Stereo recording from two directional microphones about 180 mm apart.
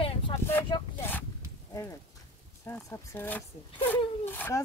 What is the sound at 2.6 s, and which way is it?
Speech, 15° left (ahead or behind).